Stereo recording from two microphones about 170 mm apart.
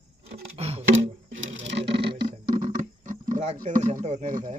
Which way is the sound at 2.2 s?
55° right (ahead or behind).